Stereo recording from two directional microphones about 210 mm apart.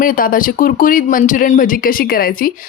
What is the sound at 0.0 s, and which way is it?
Speech, 40° left (ahead or behind).